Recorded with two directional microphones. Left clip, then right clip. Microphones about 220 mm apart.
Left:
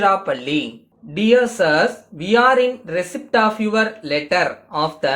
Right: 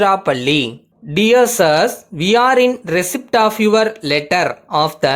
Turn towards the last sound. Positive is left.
turn(degrees=-50)  # may be behind; listen again after turning